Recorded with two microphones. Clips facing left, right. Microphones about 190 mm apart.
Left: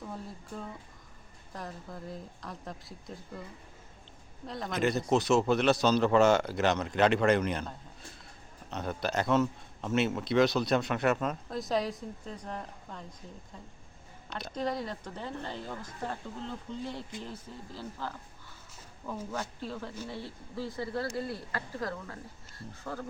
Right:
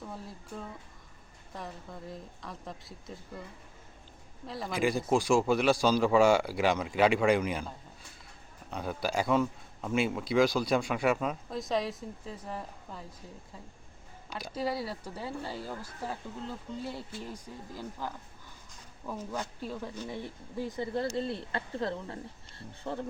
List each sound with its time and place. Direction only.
0.0 s speech: centre (ahead or behind)
4.4 s speech: 5° right (ahead or behind)
8.7 s speech: 5° right (ahead or behind)
14.3 s speech: 5° right (ahead or behind)
19.3 s speech: 10° right (ahead or behind); by 23.0 s 30° right (ahead or behind)